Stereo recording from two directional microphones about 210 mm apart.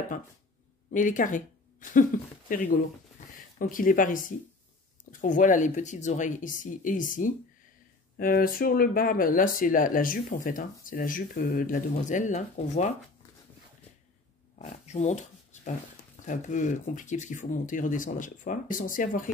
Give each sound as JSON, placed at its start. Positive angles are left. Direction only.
{"t": 0.9, "sound": "speech", "side_deg": 40}
{"t": 14.6, "sound": "a sound", "side_deg": 30}
{"t": 16.3, "sound": "speech", "side_deg": 35}